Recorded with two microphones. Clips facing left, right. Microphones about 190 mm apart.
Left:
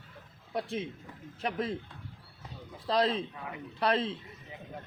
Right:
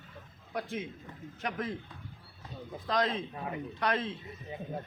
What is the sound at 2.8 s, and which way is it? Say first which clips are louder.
Speech: left 3 dB; 30° left (ahead or behind).